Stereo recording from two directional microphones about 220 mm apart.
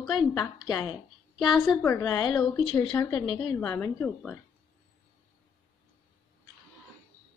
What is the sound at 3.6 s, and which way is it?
Speech, 10° left (ahead or behind).